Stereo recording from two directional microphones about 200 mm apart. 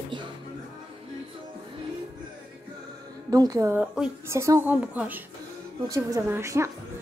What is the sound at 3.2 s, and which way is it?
A woman's voice, 20° right (ahead or behind).